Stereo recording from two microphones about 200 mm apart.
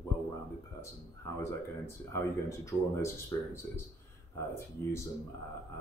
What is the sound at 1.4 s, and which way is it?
Speech, 15° left (ahead or behind).